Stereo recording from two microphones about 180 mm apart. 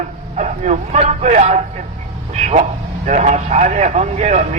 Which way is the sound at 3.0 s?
40° right (ahead or behind).